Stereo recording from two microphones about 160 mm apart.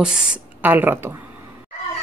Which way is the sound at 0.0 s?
5° right (ahead or behind).